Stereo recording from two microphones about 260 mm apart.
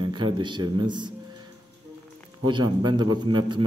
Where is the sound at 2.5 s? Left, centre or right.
Centre.